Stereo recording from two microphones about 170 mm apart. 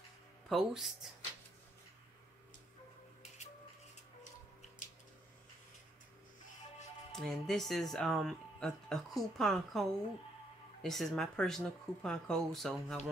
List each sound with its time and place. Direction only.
0.5 s speech: centre (ahead or behind)
4.2 s music: 50° left (ahead or behind)
7.1 s speech: centre (ahead or behind)